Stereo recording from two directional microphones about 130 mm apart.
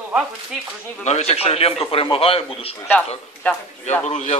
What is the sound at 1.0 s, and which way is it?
A man's voice, 55° left (ahead or behind).